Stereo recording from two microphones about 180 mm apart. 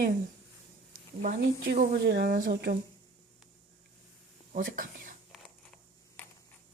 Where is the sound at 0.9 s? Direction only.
50° right (ahead or behind).